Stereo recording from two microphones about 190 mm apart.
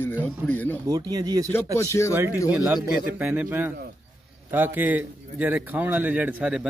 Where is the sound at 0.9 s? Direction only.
20° right (ahead or behind).